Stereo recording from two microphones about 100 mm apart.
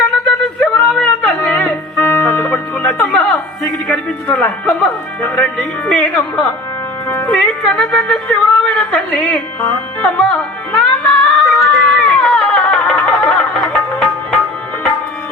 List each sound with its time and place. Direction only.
0.3 s a sound: 5° left (ahead or behind)
0.9 s music: 10° left (ahead or behind)
3.6 s speech: 5° left (ahead or behind)
10.0 s music: 10° left (ahead or behind)